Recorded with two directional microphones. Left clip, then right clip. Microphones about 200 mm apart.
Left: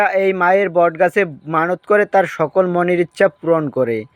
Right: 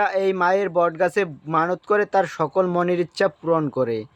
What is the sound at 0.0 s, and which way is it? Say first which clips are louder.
Speech: left 5 dB; 15° left (ahead or behind).